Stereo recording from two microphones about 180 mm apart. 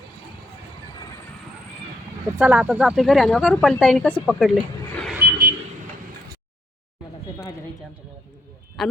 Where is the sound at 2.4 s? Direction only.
10° right (ahead or behind).